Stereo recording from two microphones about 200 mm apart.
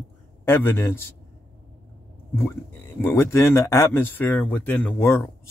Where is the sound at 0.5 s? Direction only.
10° left (ahead or behind).